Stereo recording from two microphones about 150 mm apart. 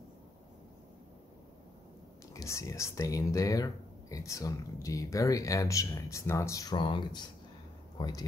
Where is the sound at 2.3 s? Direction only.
20° left (ahead or behind).